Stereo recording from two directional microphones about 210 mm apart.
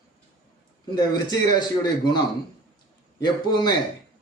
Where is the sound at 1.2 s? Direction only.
20° left (ahead or behind).